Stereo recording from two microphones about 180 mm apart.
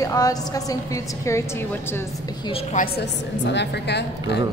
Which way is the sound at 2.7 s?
65° left (ahead or behind).